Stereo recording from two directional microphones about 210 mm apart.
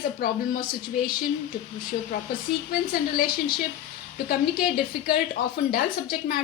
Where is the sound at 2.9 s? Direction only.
45° left (ahead or behind).